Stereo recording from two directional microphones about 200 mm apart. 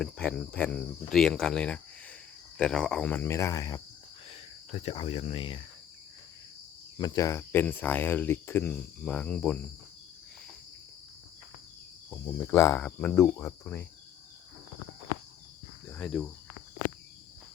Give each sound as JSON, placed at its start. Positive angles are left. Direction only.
{"t": 0.0, "sound": "speech", "side_deg": 5}
{"t": 2.6, "sound": "cricket", "side_deg": 5}
{"t": 4.3, "sound": "speech", "side_deg": 30}
{"t": 6.9, "sound": "cricket", "side_deg": 20}
{"t": 12.1, "sound": "cricket", "side_deg": 15}
{"t": 15.9, "sound": "speech", "side_deg": 5}